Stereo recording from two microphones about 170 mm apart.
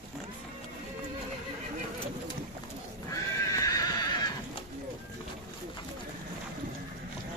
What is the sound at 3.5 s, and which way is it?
Horse, 20° left (ahead or behind).